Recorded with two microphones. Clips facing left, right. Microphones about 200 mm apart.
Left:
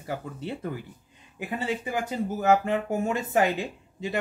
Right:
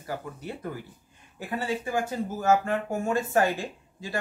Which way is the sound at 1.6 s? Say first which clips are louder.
Right 1 dB; 20° left (ahead or behind).